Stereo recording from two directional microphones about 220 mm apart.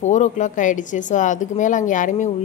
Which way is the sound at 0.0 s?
35° left (ahead or behind).